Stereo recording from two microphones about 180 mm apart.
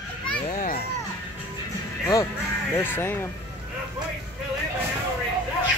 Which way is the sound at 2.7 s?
10° left (ahead or behind).